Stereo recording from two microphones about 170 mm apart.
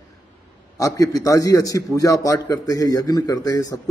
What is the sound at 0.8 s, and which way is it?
A man's voice, 20° left (ahead or behind).